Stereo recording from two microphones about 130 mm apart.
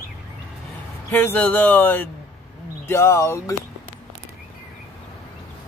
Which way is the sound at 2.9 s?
20° left (ahead or behind).